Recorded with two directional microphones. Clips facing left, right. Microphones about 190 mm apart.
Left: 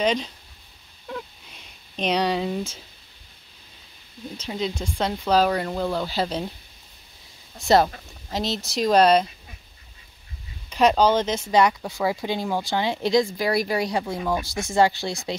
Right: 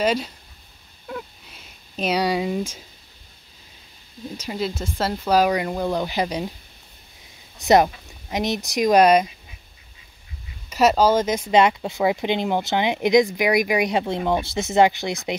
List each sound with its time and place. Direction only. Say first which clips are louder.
0.0 s speech: right 1 dB; 5° right (ahead or behind)
1.0 s a sound: right 1 dB; 5° right (ahead or behind)
4.4 s speech: right 1 dB; 5° right (ahead or behind)
7.6 s speech: right 2 dB; 15° right (ahead or behind)
10.7 s speech: right 1 dB; 5° right (ahead or behind)
11.5 s speech: right 2 dB; 20° right (ahead or behind)